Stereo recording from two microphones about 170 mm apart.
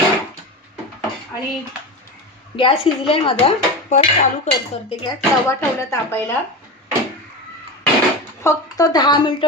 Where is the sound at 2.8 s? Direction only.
35° left (ahead or behind).